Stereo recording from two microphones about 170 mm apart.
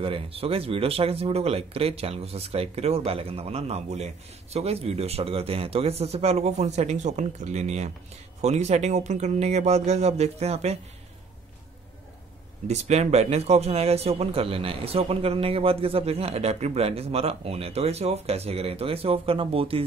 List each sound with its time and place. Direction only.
0.0 s speech: 35° right (ahead or behind)
12.6 s speech: 40° right (ahead or behind)